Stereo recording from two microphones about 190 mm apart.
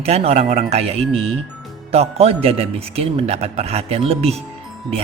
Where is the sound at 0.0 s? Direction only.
35° right (ahead or behind).